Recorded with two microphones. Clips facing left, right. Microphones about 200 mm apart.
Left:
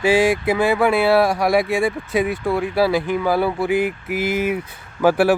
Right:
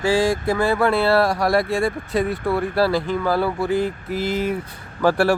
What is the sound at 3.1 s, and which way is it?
Speech, 15° left (ahead or behind).